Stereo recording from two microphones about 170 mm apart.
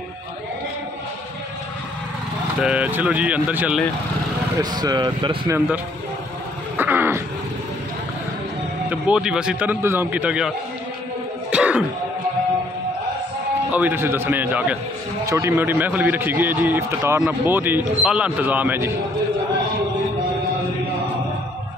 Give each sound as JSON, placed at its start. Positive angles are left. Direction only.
{"t": 2.6, "sound": "a man's voice", "side_deg": -5}
{"t": 4.6, "sound": "speech", "side_deg": -25}
{"t": 6.8, "sound": "wild animals", "side_deg": -10}
{"t": 8.8, "sound": "a man's voice", "side_deg": -10}
{"t": 11.5, "sound": "music", "side_deg": -5}
{"t": 13.7, "sound": "a man's voice", "side_deg": -10}